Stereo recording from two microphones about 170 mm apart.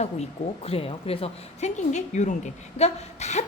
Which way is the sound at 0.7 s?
35° left (ahead or behind).